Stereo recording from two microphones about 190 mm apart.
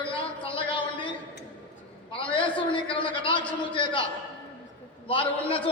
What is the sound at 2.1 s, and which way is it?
A man's voice, 25° left (ahead or behind).